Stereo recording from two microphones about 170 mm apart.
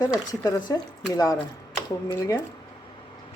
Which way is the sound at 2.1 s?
25° left (ahead or behind).